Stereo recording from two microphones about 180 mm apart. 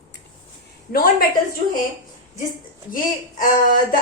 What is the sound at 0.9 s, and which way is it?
Speech, 55° left (ahead or behind).